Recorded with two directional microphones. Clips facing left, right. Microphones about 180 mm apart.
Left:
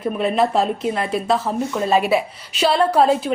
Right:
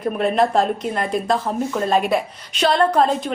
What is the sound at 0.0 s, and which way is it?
A woman's voice, centre (ahead or behind).